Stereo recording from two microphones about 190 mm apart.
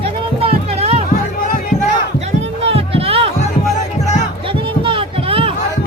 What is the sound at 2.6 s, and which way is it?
Music, 30° right (ahead or behind).